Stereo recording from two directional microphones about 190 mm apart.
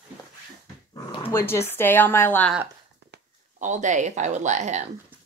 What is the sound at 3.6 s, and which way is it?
Speech, 40° right (ahead or behind).